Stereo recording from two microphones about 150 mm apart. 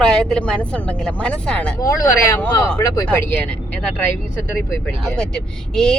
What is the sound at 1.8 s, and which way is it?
Speech, 20° left (ahead or behind).